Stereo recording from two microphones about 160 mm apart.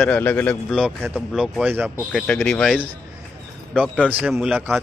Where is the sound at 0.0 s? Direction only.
10° left (ahead or behind).